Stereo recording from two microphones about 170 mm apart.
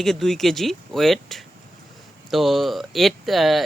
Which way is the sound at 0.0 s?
Centre (ahead or behind).